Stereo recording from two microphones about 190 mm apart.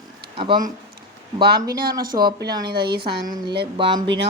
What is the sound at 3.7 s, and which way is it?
Speech, 25° right (ahead or behind).